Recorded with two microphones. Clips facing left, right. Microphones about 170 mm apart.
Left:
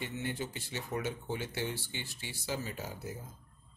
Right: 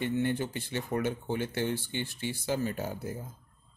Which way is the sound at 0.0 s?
55° right (ahead or behind).